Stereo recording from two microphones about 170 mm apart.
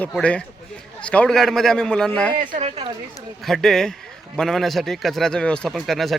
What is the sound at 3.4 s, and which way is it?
Speech, centre (ahead or behind).